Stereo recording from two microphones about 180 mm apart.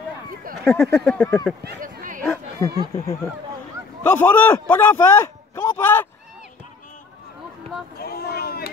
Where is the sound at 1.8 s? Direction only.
50° right (ahead or behind).